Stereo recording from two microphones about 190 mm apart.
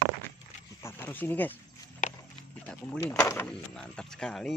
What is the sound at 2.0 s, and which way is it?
Walk, 40° left (ahead or behind).